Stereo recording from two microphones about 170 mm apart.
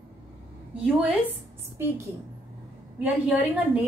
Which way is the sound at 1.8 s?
15° right (ahead or behind).